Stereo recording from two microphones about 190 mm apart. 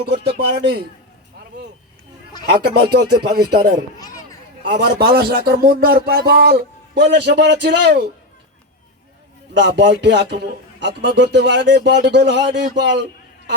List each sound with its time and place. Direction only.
0.0 s speech: 60° right (ahead or behind)
2.6 s speech: 60° right (ahead or behind)
3.9 s a sound: 20° left (ahead or behind)
4.7 s speech: 55° right (ahead or behind)
9.6 s a man's voice: 65° right (ahead or behind)